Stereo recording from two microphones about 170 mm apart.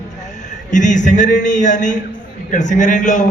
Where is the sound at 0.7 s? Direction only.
45° left (ahead or behind).